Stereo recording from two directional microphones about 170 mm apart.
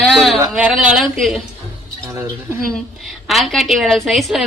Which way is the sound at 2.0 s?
15° right (ahead or behind).